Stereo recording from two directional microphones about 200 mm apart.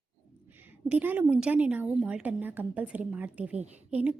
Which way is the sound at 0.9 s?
10° right (ahead or behind).